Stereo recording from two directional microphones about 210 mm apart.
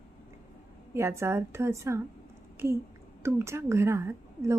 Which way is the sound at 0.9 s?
10° right (ahead or behind).